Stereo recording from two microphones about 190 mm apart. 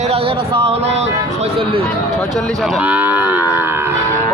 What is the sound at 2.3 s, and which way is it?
Cattle, centre (ahead or behind).